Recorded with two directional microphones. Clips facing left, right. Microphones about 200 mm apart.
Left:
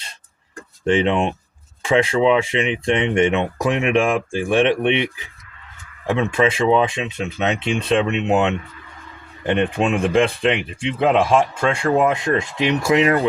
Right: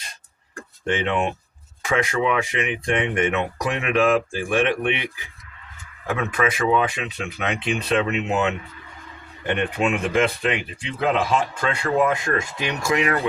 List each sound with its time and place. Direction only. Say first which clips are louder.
0.9 s speech: left 5 dB; 30° left (ahead or behind)
6.1 s speech: left 5 dB; 25° left (ahead or behind)
9.7 s speech: left 2 dB; 25° left (ahead or behind)